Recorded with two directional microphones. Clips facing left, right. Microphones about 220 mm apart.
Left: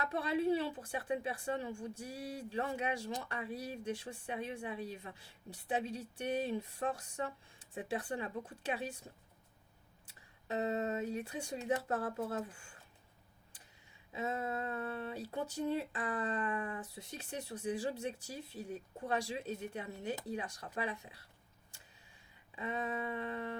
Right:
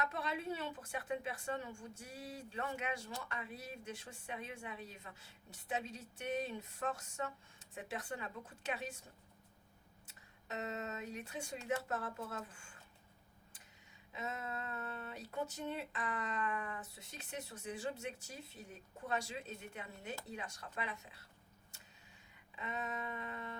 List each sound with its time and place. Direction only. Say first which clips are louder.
0.0 s speech: left 7 dB; 30° left (ahead or behind)
10.5 s speech: left 8 dB; 30° left (ahead or behind)
14.1 s speech: left 6 dB; 35° left (ahead or behind)
22.5 s speech: left 5 dB; 30° left (ahead or behind)